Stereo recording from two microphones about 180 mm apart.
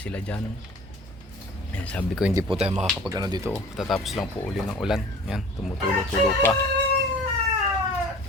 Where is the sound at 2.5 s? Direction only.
35° right (ahead or behind).